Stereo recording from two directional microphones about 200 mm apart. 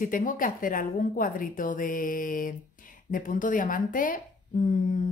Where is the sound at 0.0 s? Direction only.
40° left (ahead or behind).